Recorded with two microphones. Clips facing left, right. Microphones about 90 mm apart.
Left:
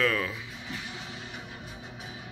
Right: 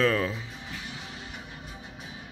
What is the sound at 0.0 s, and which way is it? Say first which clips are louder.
Speech: right 3 dB; 30° right (ahead or behind).